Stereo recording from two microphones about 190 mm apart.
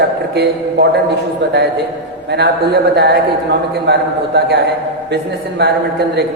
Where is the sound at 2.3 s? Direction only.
60° right (ahead or behind).